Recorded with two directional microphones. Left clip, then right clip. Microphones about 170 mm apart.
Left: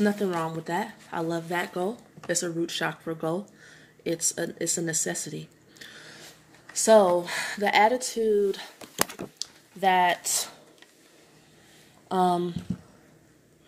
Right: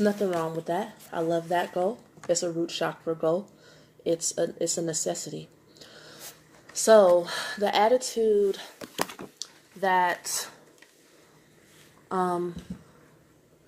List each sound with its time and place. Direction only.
0.0 s speech: 35° left (ahead or behind)
12.1 s speech: 45° left (ahead or behind)